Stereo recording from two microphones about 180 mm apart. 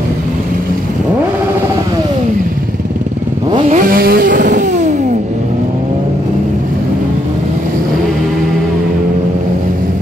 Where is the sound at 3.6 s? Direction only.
45° right (ahead or behind).